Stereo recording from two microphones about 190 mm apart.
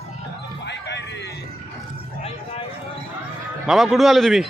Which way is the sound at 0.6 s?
65° left (ahead or behind).